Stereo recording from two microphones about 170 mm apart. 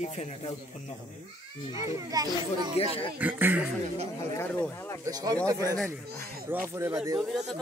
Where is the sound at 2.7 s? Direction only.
35° left (ahead or behind).